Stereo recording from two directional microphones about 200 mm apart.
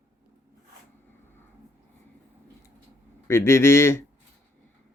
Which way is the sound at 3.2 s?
10° left (ahead or behind).